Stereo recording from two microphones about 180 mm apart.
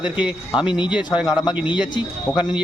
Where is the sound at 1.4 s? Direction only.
25° left (ahead or behind).